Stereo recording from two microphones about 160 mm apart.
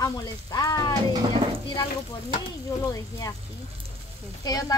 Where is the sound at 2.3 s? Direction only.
25° left (ahead or behind).